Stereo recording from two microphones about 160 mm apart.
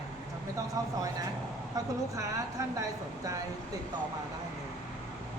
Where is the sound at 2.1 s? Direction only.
20° right (ahead or behind).